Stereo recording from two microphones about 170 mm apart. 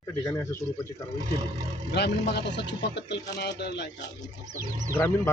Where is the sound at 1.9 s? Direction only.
75° left (ahead or behind).